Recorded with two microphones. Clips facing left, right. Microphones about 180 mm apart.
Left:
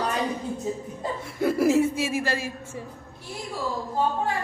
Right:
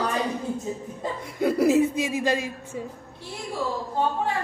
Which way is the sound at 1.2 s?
20° right (ahead or behind).